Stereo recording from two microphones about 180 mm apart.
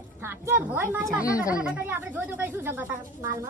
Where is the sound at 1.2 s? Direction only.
20° left (ahead or behind).